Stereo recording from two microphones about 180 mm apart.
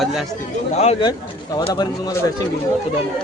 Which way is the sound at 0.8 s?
30° left (ahead or behind).